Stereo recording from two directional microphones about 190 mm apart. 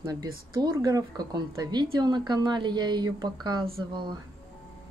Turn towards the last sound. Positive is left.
turn(degrees=-25)  # may be behind; listen again after turning